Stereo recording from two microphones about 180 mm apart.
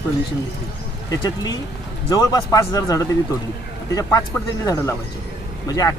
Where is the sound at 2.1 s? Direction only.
20° left (ahead or behind).